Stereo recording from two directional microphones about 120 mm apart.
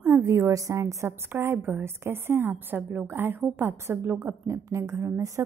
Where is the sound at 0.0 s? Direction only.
20° right (ahead or behind).